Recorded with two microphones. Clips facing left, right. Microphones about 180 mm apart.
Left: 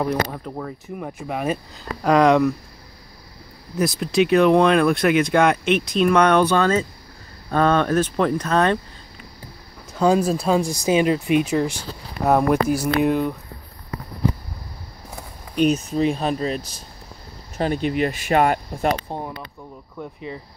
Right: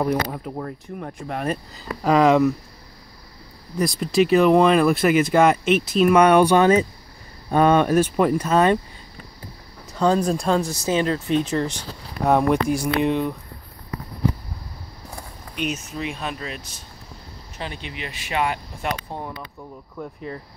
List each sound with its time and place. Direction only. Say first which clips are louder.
0.0 s speech: even; 5° right (ahead or behind)
3.7 s speech: even; centre (ahead or behind)
9.9 s speech: left 2 dB; 5° left (ahead or behind)
15.5 s speech: left 9 dB; 35° left (ahead or behind)
19.0 s speech: left 2 dB; 15° left (ahead or behind)